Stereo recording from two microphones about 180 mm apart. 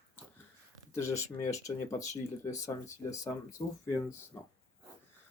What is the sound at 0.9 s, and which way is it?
Speech, 15° left (ahead or behind).